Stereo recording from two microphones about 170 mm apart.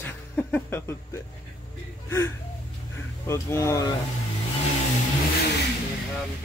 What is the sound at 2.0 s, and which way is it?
Speech, 15° left (ahead or behind).